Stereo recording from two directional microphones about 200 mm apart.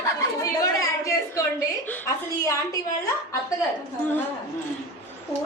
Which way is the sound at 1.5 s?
15° left (ahead or behind).